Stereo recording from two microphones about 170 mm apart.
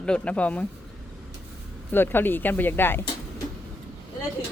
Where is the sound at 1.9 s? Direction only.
10° left (ahead or behind).